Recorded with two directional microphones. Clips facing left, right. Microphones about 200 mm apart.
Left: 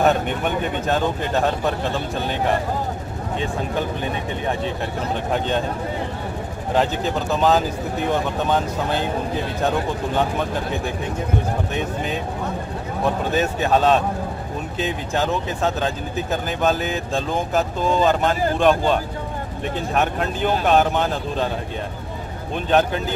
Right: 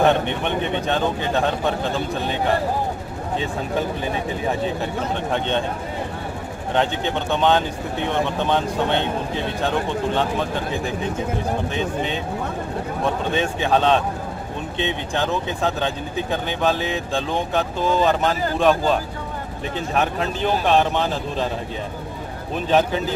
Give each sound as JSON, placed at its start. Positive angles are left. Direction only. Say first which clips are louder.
{"t": 0.0, "sound": "speech", "louder": "even", "side_deg": 5}
{"t": 6.7, "sound": "speech", "louder": "left 1 dB", "side_deg": 5}
{"t": 13.3, "sound": "speech", "louder": "left 1 dB", "side_deg": 5}
{"t": 22.7, "sound": "speech", "louder": "even", "side_deg": 0}